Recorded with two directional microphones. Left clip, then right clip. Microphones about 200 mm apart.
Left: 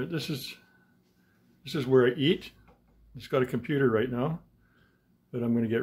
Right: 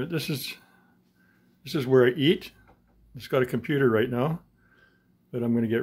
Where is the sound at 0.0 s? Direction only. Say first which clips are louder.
Right 3 dB; 30° right (ahead or behind).